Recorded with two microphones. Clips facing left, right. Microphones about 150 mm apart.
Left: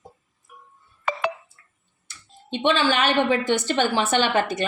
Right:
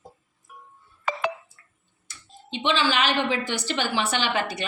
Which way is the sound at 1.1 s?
65° left (ahead or behind).